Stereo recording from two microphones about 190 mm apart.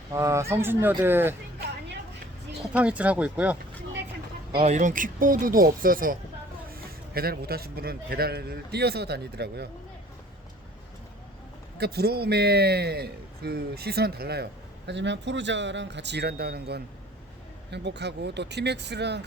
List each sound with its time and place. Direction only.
0.1 s speech: 15° right (ahead or behind)
2.7 s speech: 5° right (ahead or behind)
4.5 s a man's voice: 35° right (ahead or behind); by 9.6 s 60° right (ahead or behind)
11.8 s a man's voice: 55° right (ahead or behind)
14.8 s a man's voice: 70° right (ahead or behind)